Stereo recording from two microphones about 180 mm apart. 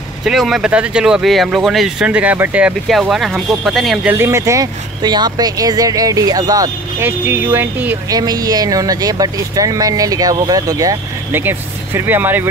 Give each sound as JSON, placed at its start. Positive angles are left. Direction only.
{"t": 0.2, "sound": "speech", "side_deg": 0}
{"t": 4.1, "sound": "speech", "side_deg": -15}
{"t": 8.1, "sound": "speech", "side_deg": -20}